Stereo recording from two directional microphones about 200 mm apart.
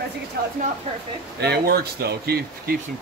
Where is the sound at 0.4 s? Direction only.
50° right (ahead or behind).